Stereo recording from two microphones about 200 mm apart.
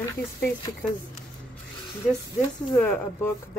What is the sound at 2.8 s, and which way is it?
Speech, 5° left (ahead or behind).